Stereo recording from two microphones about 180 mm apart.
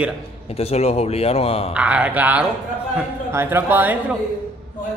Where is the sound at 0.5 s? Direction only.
35° left (ahead or behind).